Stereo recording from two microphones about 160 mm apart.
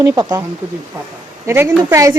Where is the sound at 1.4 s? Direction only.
15° right (ahead or behind).